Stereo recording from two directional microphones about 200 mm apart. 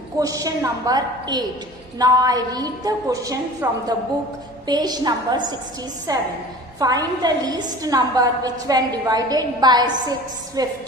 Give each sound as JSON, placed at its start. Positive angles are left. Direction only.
{"t": 0.2, "sound": "a woman's voice", "side_deg": -15}